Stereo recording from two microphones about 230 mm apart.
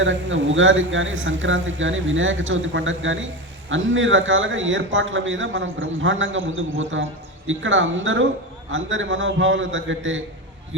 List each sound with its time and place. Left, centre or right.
0.0 s a man's voice: right